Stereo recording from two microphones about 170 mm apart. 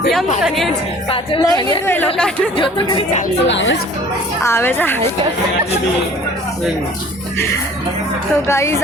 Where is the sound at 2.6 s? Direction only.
30° left (ahead or behind).